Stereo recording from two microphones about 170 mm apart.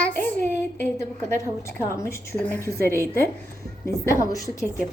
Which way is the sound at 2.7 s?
60° right (ahead or behind).